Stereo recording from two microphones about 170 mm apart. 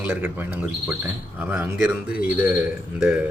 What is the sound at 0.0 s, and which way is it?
Speech, 10° right (ahead or behind).